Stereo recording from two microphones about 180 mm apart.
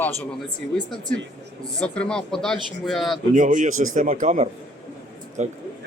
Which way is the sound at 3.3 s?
45° right (ahead or behind).